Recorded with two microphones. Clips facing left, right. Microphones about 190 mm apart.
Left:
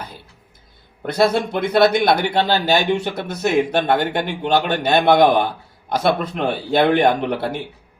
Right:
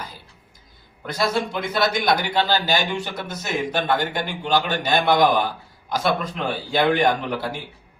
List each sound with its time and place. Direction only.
1.0 s a man's voice: 60° left (ahead or behind)